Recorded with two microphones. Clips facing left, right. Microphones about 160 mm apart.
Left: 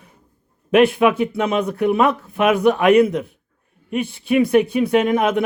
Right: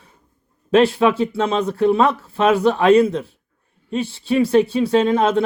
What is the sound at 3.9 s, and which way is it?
Speech, 15° left (ahead or behind).